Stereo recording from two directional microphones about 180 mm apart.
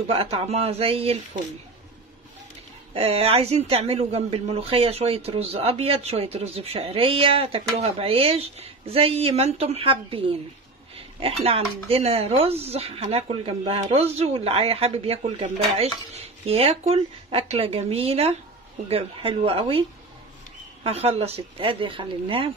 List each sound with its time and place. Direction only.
0.0 s speech: 35° right (ahead or behind)
2.9 s speech: 35° right (ahead or behind)
20.8 s speech: 35° right (ahead or behind)